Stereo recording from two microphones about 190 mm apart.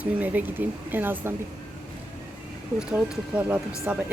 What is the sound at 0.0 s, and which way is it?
Speech, 10° right (ahead or behind).